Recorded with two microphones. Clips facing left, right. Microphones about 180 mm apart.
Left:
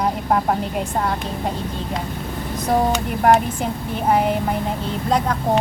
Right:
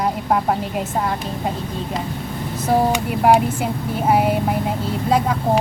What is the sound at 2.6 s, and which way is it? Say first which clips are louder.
Speech: right 1 dB; 5° right (ahead or behind).